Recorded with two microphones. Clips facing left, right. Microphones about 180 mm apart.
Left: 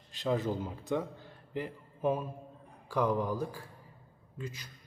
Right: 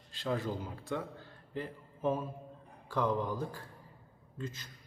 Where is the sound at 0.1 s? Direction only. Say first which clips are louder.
Left 3 dB; 20° left (ahead or behind).